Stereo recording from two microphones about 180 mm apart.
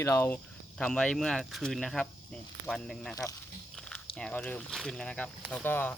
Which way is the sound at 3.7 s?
5° left (ahead or behind).